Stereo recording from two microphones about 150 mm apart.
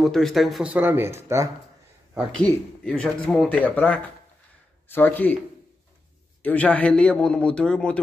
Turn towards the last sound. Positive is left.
turn(degrees=5)  # may be behind; listen again after turning